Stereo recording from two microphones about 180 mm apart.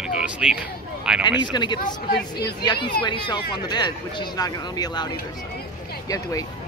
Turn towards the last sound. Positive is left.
turn(degrees=20)  # may be behind; listen again after turning